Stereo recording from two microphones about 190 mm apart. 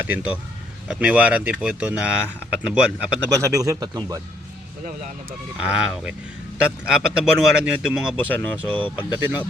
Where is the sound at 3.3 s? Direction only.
15° right (ahead or behind).